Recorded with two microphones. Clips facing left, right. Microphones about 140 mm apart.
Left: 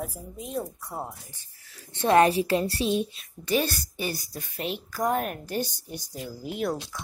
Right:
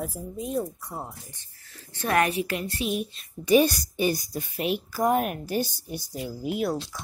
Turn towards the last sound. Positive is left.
turn(degrees=-5)  # may be behind; listen again after turning